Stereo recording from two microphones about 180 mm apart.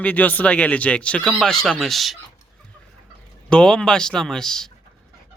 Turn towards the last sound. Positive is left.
turn(degrees=5)  # may be behind; listen again after turning